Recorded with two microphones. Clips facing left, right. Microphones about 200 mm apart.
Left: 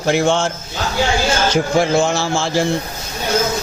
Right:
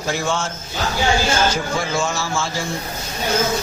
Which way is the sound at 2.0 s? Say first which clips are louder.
Left 5 dB; 65° left (ahead or behind).